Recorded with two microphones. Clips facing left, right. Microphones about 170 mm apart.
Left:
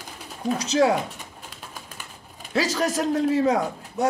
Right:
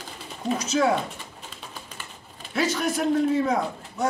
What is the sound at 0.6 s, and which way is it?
Speech, 35° left (ahead or behind).